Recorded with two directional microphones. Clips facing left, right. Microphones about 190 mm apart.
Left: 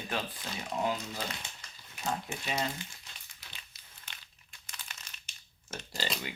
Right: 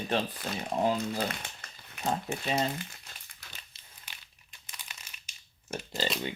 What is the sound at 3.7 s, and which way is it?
Crumpling, 30° right (ahead or behind).